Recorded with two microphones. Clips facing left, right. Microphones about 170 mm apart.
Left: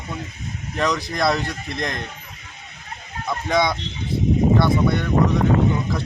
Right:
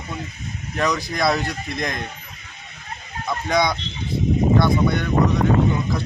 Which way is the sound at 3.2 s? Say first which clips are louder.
Even; centre (ahead or behind).